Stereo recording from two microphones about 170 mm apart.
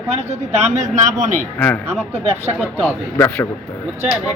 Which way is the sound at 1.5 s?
10° left (ahead or behind).